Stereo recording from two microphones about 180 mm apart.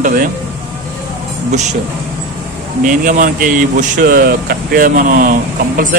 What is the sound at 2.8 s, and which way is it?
Speech, 50° right (ahead or behind).